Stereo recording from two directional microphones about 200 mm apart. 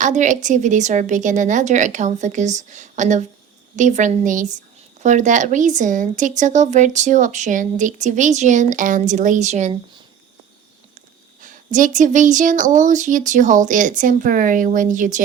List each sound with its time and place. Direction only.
0.0 s speech: 40° right (ahead or behind)
11.3 s speech: 40° right (ahead or behind)